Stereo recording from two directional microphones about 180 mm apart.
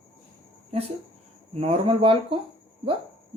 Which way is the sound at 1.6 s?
30° right (ahead or behind).